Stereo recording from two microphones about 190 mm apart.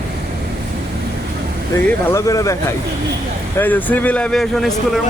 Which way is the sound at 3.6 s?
10° left (ahead or behind).